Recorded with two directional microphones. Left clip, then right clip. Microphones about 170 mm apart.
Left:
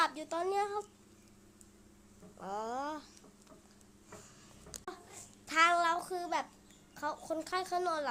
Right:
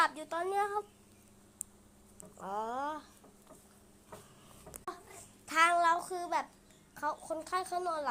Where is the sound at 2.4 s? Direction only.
10° left (ahead or behind).